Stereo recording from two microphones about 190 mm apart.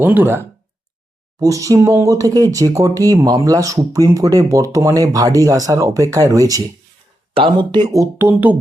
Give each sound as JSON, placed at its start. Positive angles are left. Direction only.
{"t": 0.0, "sound": "speech", "side_deg": -10}